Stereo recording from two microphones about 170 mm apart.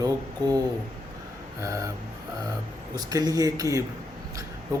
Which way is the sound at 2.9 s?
20° right (ahead or behind).